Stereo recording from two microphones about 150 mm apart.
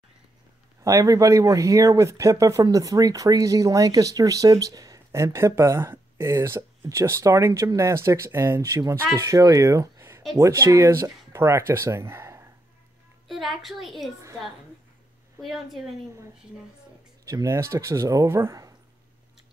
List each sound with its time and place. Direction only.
0.8 s speech: 20° right (ahead or behind)
13.3 s a woman's voice: centre (ahead or behind)
15.4 s a woman's voice: centre (ahead or behind)
17.2 s speech: 20° right (ahead or behind)